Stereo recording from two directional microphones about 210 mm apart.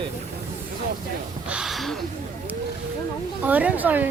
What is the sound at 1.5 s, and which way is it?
Gasp, centre (ahead or behind).